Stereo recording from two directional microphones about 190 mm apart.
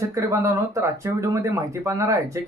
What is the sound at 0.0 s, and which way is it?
Speech, 15° right (ahead or behind).